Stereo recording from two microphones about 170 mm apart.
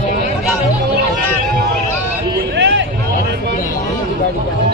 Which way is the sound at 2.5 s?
90° right.